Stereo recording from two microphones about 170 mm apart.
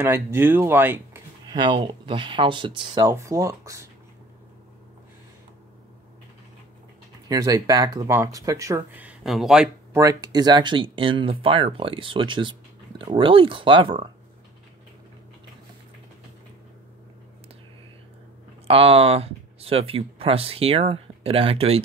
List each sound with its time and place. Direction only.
0.0 s speech: 15° right (ahead or behind)
1.5 s speech: 25° right (ahead or behind)
7.2 s speech: 20° right (ahead or behind); by 9.7 s centre (ahead or behind)
9.9 s speech: 20° right (ahead or behind)
18.7 s speech: 35° right (ahead or behind)